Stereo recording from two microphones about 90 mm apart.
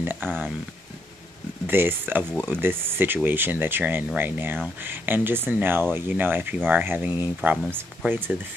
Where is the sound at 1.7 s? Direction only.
25° right (ahead or behind).